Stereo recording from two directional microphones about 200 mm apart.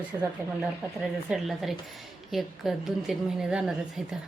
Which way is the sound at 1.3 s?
Centre (ahead or behind).